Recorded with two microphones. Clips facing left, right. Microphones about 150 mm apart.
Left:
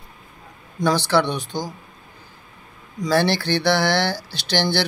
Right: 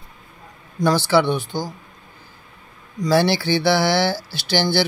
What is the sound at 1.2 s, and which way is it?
Speech, 20° left (ahead or behind).